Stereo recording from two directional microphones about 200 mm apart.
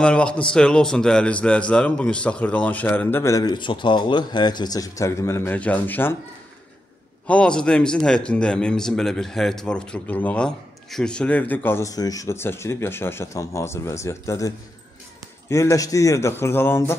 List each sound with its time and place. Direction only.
0.0 s a man's voice: 5° left (ahead or behind)
7.2 s a man's voice: 5° left (ahead or behind)
15.5 s a man's voice: 15° left (ahead or behind)